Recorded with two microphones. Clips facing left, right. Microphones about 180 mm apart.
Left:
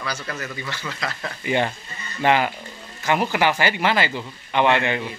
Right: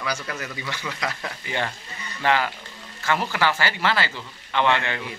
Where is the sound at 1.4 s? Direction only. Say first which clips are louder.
Left 7 dB; 20° left (ahead or behind).